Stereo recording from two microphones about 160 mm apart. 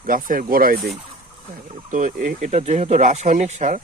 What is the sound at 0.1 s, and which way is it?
Speech, 60° right (ahead or behind).